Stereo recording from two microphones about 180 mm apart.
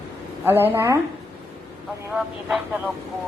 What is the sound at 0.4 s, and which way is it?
Speech, 10° right (ahead or behind).